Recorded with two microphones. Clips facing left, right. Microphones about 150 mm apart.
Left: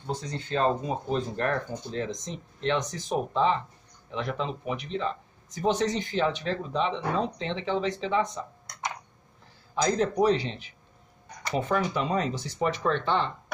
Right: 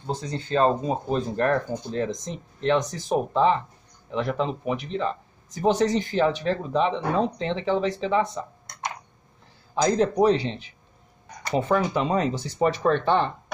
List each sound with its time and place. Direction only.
0.0 s speech: 30° right (ahead or behind)
9.8 s speech: 30° right (ahead or behind)